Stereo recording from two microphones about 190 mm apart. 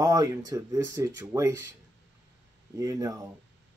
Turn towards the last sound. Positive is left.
turn(degrees=-20)  # may be behind; listen again after turning